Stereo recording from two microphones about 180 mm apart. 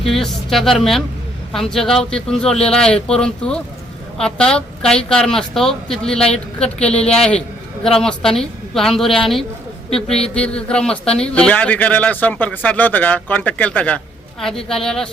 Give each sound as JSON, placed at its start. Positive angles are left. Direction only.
{"t": 0.1, "sound": "a woman's voice", "side_deg": 0}